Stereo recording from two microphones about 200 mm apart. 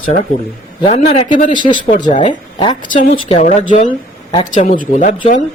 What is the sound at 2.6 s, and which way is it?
Speech, 25° left (ahead or behind).